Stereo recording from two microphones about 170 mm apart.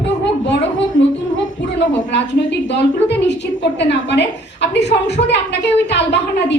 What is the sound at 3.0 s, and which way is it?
A woman's voice, 90° left.